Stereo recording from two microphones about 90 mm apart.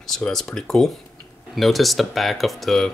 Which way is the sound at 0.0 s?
5° left (ahead or behind).